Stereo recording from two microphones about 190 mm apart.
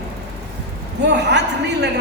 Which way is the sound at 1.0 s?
65° right (ahead or behind).